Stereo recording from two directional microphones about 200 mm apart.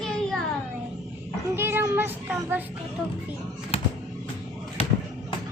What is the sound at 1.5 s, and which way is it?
Child singing, 10° right (ahead or behind).